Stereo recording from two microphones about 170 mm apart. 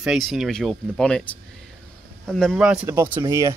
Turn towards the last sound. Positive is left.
turn(degrees=-20)  # may be behind; listen again after turning